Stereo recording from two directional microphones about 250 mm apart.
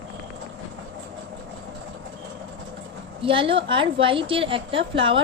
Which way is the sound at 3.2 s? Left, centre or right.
Right.